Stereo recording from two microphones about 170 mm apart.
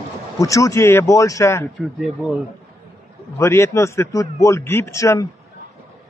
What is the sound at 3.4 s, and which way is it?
A man's voice, 15° left (ahead or behind).